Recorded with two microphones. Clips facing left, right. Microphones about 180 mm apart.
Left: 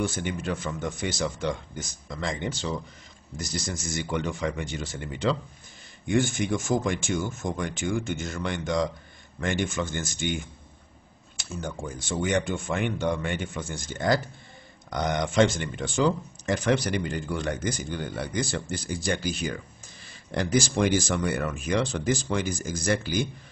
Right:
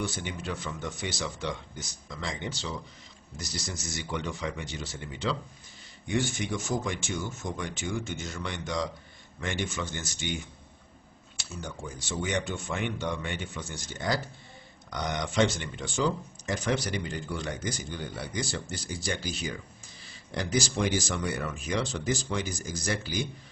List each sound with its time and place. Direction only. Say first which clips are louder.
0.0 s speech: left 5 dB; 50° left (ahead or behind)
11.3 s speech: left 5 dB; 50° left (ahead or behind)